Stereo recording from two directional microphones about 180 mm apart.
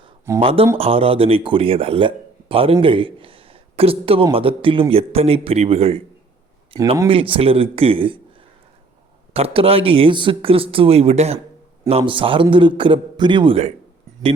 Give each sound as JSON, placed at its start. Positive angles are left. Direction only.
{"t": 0.3, "sound": "a man's voice", "side_deg": -30}
{"t": 9.3, "sound": "a man's voice", "side_deg": -30}